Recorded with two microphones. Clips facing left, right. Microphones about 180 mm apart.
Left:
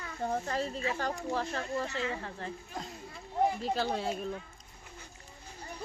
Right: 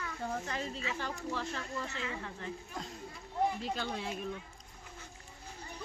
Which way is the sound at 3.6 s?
40° left (ahead or behind).